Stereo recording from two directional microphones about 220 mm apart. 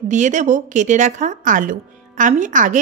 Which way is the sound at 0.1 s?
35° right (ahead or behind).